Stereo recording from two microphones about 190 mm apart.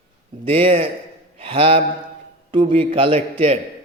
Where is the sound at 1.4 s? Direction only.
30° right (ahead or behind).